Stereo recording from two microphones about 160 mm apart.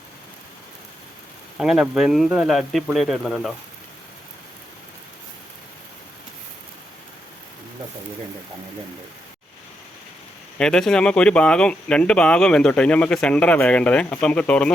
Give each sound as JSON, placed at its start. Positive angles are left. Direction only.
{"t": 1.5, "sound": "speech", "side_deg": -5}
{"t": 10.6, "sound": "speech", "side_deg": 5}